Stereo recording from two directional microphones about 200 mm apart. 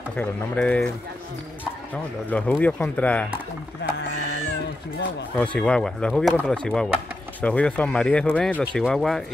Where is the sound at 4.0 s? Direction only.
65° left (ahead or behind).